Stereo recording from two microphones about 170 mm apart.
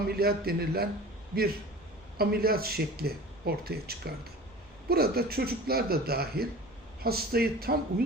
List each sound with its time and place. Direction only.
0.2 s speech: 65° right (ahead or behind)
2.1 s speech: 65° right (ahead or behind)